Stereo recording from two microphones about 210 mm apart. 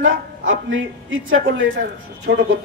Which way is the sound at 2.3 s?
50° right (ahead or behind).